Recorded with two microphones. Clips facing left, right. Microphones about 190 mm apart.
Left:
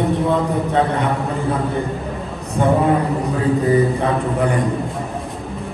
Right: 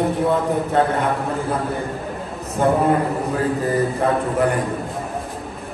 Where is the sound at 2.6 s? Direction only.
Centre (ahead or behind).